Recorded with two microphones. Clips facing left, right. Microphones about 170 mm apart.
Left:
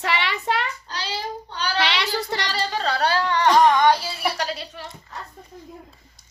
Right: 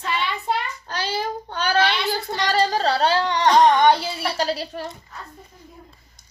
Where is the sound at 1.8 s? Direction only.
90° left.